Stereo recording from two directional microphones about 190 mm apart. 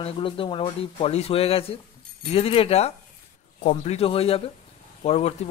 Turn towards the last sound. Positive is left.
turn(degrees=35)  # may be behind; listen again after turning